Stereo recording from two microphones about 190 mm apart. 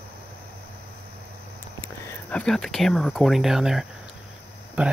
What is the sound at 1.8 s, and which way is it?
Speech, 5° left (ahead or behind).